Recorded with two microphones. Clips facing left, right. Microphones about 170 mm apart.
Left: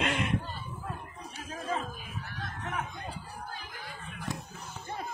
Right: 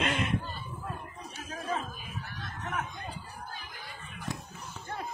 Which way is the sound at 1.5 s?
10° left (ahead or behind).